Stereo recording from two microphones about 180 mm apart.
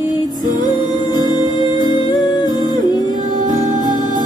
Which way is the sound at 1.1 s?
25° left (ahead or behind).